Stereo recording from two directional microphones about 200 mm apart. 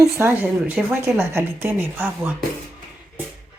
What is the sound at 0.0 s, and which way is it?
A woman's voice, 10° right (ahead or behind).